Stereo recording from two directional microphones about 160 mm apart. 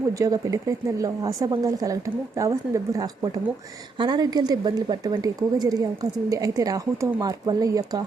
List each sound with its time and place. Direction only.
0.2 s a woman's voice: 20° right (ahead or behind)